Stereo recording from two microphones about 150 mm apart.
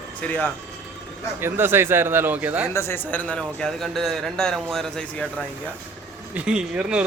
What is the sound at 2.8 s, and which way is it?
A man's voice, 15° left (ahead or behind).